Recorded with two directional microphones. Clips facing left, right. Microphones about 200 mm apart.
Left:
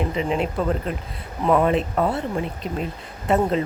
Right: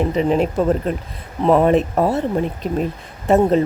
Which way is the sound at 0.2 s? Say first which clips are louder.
Right 7 dB; 40° right (ahead or behind).